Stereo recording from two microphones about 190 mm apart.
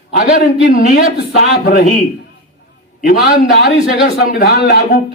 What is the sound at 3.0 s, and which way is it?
A man's voice, 45° left (ahead or behind).